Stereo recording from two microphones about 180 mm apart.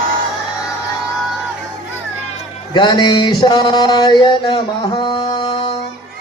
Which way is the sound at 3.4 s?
25° left (ahead or behind).